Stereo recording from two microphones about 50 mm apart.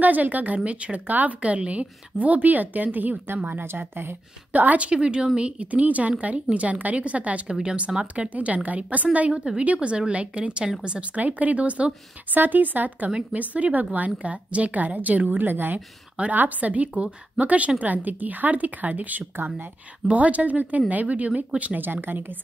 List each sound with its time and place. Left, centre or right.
0.0 s a woman's voice: right
4.5 s a woman's voice: right